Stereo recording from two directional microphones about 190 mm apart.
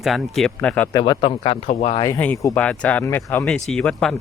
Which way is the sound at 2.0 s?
15° left (ahead or behind).